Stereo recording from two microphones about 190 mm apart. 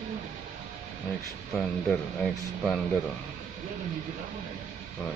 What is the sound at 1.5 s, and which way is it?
Speech, centre (ahead or behind).